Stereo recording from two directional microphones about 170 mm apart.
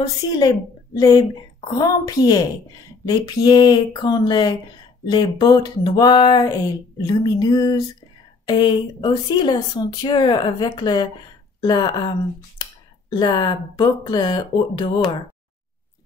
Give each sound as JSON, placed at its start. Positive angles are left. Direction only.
{"t": 0.9, "sound": "speech", "side_deg": 25}
{"t": 13.1, "sound": "speech", "side_deg": 25}